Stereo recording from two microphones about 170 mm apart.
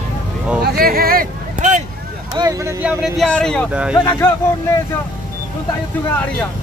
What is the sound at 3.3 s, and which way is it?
Speech, 5° left (ahead or behind).